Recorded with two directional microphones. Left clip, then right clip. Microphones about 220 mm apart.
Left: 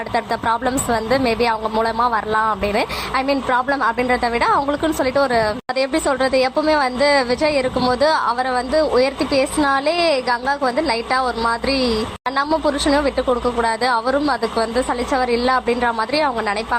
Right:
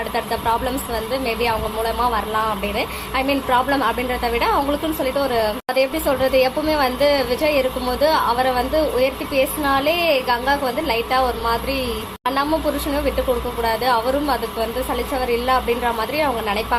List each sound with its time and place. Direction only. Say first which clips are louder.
1.2 s a woman's voice: left 3 dB; 25° left (ahead or behind)